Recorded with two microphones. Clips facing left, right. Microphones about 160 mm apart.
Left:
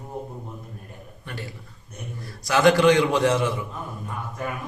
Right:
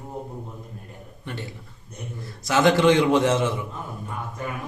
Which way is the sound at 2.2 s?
20° right (ahead or behind).